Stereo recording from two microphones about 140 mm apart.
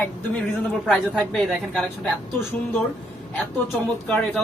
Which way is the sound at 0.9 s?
5° left (ahead or behind).